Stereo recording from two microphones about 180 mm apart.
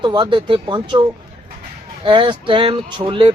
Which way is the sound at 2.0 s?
30° right (ahead or behind).